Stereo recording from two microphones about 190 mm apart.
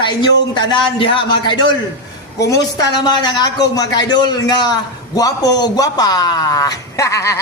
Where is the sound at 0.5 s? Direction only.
25° left (ahead or behind).